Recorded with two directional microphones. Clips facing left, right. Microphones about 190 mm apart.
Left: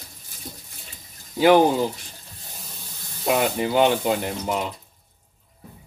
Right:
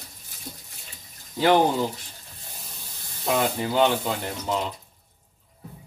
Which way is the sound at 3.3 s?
15° left (ahead or behind).